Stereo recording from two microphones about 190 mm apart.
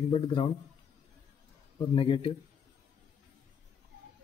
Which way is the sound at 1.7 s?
25° left (ahead or behind).